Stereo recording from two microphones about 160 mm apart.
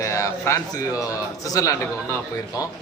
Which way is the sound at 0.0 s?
20° left (ahead or behind).